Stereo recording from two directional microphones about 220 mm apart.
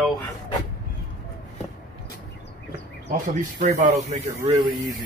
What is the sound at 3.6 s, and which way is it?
Speech, 30° right (ahead or behind).